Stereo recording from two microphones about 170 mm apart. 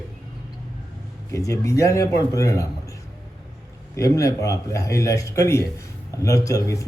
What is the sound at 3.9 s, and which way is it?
Speech, 20° left (ahead or behind).